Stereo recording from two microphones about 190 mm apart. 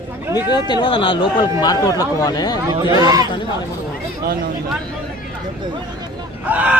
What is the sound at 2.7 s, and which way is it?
Speech, 20° right (ahead or behind).